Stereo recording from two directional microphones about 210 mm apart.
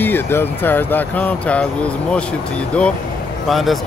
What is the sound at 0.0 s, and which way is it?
Speech, 10° left (ahead or behind).